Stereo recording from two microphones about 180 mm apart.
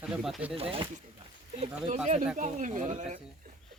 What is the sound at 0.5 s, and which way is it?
Speech, 30° right (ahead or behind).